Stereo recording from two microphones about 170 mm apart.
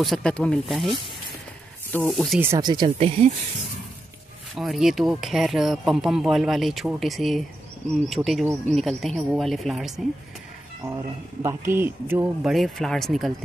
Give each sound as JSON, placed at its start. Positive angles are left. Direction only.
{"t": 0.0, "sound": "speech", "side_deg": 5}
{"t": 2.4, "sound": "speech", "side_deg": -20}
{"t": 3.0, "sound": "speech", "side_deg": -40}
{"t": 4.6, "sound": "speech", "side_deg": 0}
{"t": 11.4, "sound": "speech", "side_deg": -15}
{"t": 12.4, "sound": "speech", "side_deg": 0}